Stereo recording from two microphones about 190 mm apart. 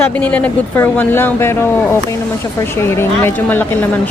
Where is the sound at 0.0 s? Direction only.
10° left (ahead or behind).